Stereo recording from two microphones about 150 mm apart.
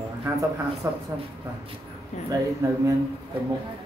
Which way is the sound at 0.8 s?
20° right (ahead or behind).